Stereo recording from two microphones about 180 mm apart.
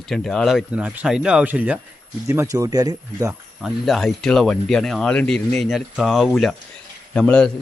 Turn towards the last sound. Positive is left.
turn(degrees=5)  # may be behind; listen again after turning